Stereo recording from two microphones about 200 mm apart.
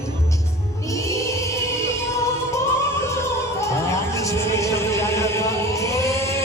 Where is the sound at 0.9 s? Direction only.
15° left (ahead or behind).